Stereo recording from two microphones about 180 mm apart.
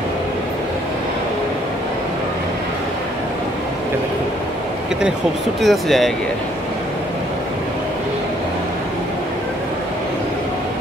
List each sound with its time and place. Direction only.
5.6 s speech: centre (ahead or behind)